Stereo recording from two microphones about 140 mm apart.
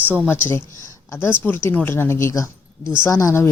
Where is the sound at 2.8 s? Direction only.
5° right (ahead or behind).